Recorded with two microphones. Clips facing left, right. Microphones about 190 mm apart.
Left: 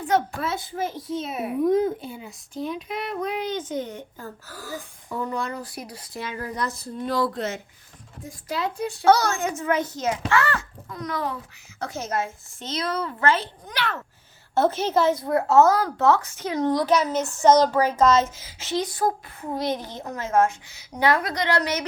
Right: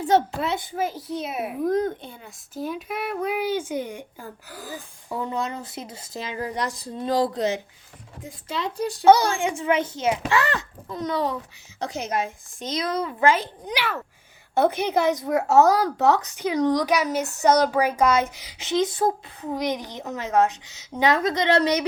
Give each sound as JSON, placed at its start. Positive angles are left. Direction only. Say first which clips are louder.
{"t": 0.1, "sound": "a woman's voice", "louder": "right 2 dB", "side_deg": -25}
{"t": 1.1, "sound": "a child's voice", "louder": "left 1 dB", "side_deg": 0}
{"t": 9.2, "sound": "a woman's voice", "louder": "right 1 dB", "side_deg": -30}
{"t": 9.5, "sound": "speech", "louder": "right 2 dB", "side_deg": -15}
{"t": 9.8, "sound": "a woman's voice", "louder": "right 2 dB", "side_deg": -25}